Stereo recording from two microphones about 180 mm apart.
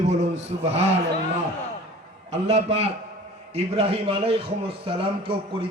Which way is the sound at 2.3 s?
35° right (ahead or behind).